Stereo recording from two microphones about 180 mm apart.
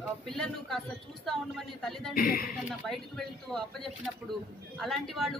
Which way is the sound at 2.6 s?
Centre (ahead or behind).